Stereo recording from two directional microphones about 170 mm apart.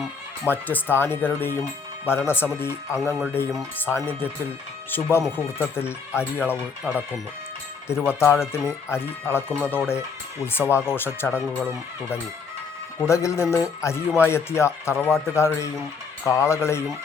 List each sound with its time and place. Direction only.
0.4 s speech: 10° left (ahead or behind)
3.0 s speech: centre (ahead or behind)
3.8 s speech: 15° left (ahead or behind)
7.9 s speech: 15° left (ahead or behind)
14.9 s speech: centre (ahead or behind)
15.3 s speech: 15° left (ahead or behind)